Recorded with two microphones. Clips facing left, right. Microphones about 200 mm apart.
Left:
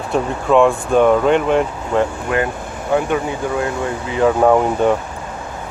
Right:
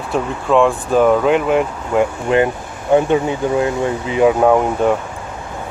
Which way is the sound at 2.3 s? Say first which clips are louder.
Right 6 dB; 25° right (ahead or behind).